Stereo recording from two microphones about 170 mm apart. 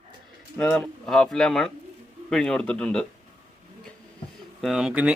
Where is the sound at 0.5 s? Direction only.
5° left (ahead or behind).